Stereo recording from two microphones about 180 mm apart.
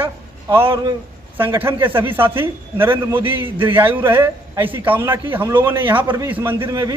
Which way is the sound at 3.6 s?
10° right (ahead or behind).